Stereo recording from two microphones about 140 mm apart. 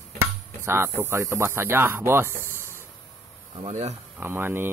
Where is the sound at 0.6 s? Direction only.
15° right (ahead or behind).